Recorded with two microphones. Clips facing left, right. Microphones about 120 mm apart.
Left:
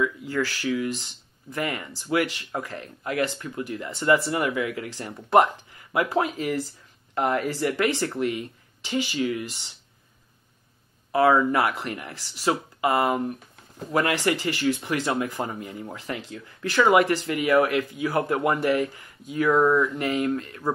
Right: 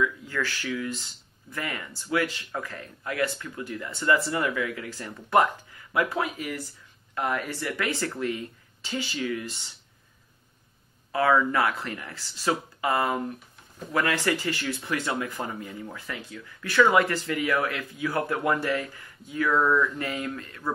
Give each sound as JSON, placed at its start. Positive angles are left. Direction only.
{"t": 0.3, "sound": "speech", "side_deg": 30}
{"t": 7.8, "sound": "speech", "side_deg": 20}
{"t": 11.1, "sound": "speech", "side_deg": 30}
{"t": 16.8, "sound": "speech", "side_deg": 20}